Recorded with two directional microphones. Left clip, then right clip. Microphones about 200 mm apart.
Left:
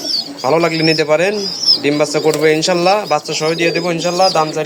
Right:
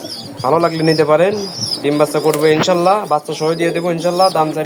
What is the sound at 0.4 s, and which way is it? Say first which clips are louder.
Speech: even; centre (ahead or behind).